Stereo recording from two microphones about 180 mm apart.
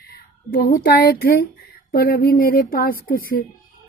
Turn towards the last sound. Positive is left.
turn(degrees=55)  # may be behind; listen again after turning